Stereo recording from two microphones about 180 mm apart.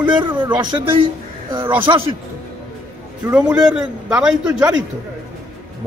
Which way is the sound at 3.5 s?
5° right (ahead or behind).